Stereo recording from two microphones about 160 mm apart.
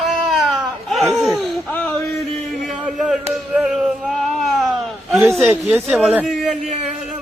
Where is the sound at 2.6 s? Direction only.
5° right (ahead or behind).